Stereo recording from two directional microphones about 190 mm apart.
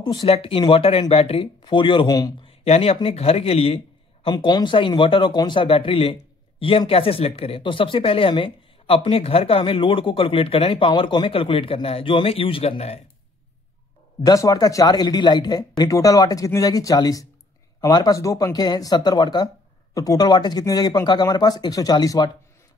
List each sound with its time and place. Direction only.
0.0 s speech: 20° left (ahead or behind)
2.6 s speech: 35° left (ahead or behind)
14.2 s speech: 20° left (ahead or behind)